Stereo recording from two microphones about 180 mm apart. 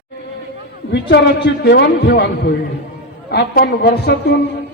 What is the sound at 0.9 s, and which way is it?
A man's voice, 70° left (ahead or behind).